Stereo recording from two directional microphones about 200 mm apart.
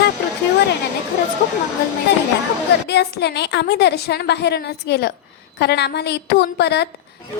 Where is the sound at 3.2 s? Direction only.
60° left (ahead or behind).